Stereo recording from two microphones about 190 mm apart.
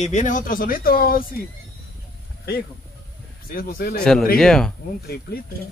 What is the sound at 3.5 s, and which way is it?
Speech, 50° left (ahead or behind).